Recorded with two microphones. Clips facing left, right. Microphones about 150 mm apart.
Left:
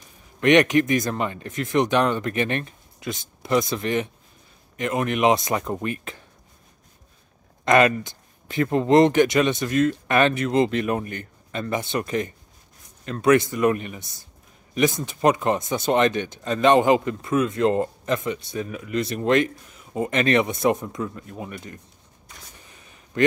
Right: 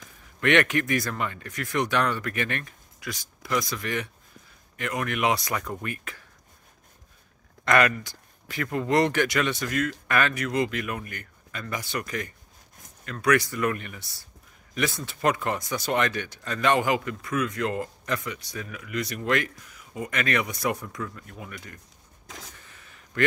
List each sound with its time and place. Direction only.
0.4 s speech: 20° left (ahead or behind)
7.6 s speech: 20° left (ahead or behind)
22.6 s a sound: 20° left (ahead or behind)